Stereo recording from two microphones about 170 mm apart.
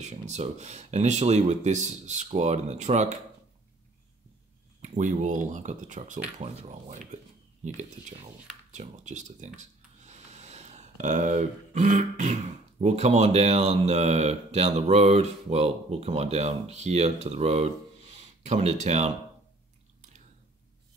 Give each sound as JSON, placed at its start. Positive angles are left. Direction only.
{"t": 0.0, "sound": "speech", "side_deg": -40}
{"t": 4.8, "sound": "speech", "side_deg": -45}